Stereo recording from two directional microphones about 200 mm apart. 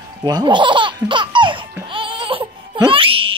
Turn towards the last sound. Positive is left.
turn(degrees=-25)  # may be behind; listen again after turning